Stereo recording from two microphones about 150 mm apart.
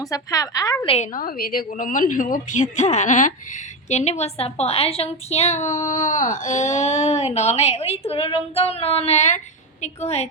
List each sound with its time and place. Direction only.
0.0 s a woman's voice: 25° left (ahead or behind)
1.1 s a woman's voice: 75° left (ahead or behind)
1.7 s a woman's voice: 60° left (ahead or behind); by 10.2 s 45° left (ahead or behind)